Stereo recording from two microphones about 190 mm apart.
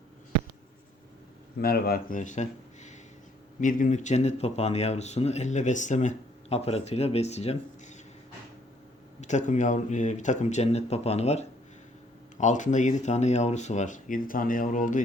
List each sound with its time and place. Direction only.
1.6 s speech: 50° left (ahead or behind); by 7.9 s 35° left (ahead or behind)
9.2 s speech: 40° left (ahead or behind)